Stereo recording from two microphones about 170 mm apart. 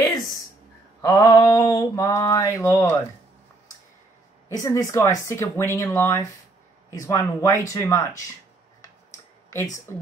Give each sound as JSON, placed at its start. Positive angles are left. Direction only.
{"t": 1.0, "sound": "mantra", "side_deg": 20}
{"t": 4.5, "sound": "speech", "side_deg": 20}
{"t": 7.7, "sound": "mantra", "side_deg": 20}
{"t": 9.9, "sound": "speech", "side_deg": 15}